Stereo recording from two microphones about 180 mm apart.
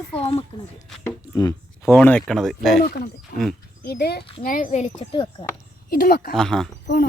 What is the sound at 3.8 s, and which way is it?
Speech, 65° left (ahead or behind).